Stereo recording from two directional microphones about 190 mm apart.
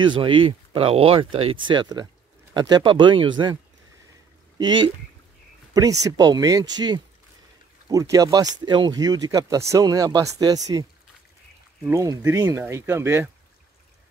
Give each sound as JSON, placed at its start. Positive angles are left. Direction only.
{"t": 0.0, "sound": "speech", "side_deg": -25}
{"t": 4.6, "sound": "speech", "side_deg": -25}